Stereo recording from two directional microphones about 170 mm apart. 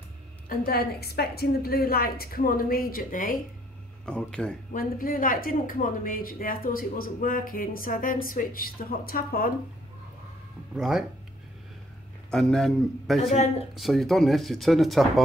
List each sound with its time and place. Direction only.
0.5 s speech: 65° left (ahead or behind)
4.0 s speech: 5° left (ahead or behind)
4.7 s speech: 55° left (ahead or behind)
10.7 s speech: 5° right (ahead or behind)
12.3 s speech: 5° left (ahead or behind)
13.3 s speech: 40° left (ahead or behind)
13.7 s speech: centre (ahead or behind)